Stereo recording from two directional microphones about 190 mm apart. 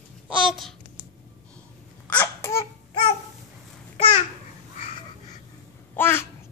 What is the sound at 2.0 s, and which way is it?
Babbling, 10° left (ahead or behind).